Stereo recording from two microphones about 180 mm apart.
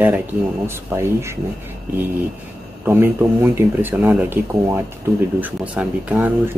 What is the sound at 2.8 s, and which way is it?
Speech, 10° right (ahead or behind).